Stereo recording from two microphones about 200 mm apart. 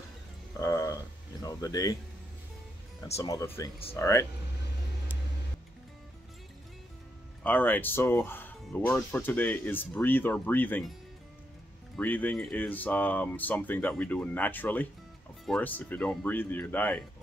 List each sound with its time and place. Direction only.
0.6 s a sound: 15° left (ahead or behind)
1.4 s speech: 20° left (ahead or behind)
3.2 s speech: 15° left (ahead or behind)
7.4 s speech: 10° left (ahead or behind)
12.0 s speech: 10° left (ahead or behind)